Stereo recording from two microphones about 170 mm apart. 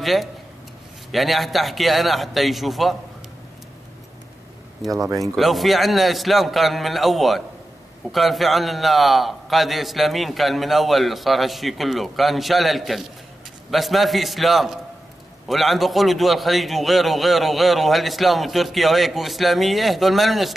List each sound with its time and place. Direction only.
0.0 s a man's voice: centre (ahead or behind)
4.9 s speech: 20° right (ahead or behind)
5.2 s a man's voice: centre (ahead or behind)